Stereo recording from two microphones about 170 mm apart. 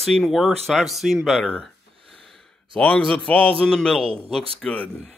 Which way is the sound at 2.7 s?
5° left (ahead or behind).